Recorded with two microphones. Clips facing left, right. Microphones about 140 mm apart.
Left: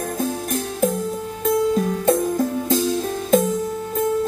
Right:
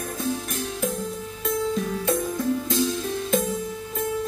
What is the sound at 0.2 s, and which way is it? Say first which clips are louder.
Music: left 3 dB; 45° left (ahead or behind).